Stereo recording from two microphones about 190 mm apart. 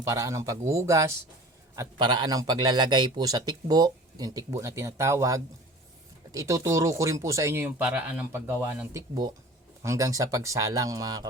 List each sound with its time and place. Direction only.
0.0 s a man's voice: 15° right (ahead or behind)